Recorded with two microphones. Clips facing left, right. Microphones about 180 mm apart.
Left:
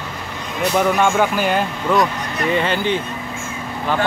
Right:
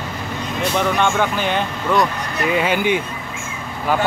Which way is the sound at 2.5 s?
10° right (ahead or behind).